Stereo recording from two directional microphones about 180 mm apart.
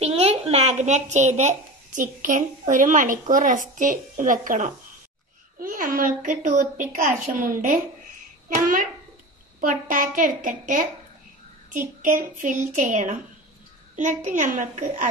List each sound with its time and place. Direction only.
0.0 s a child's voice: 35° right (ahead or behind)
9.6 s a woman's voice: 50° right (ahead or behind)